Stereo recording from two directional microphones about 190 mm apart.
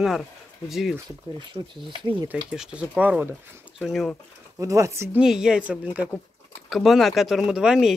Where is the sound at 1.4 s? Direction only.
25° right (ahead or behind).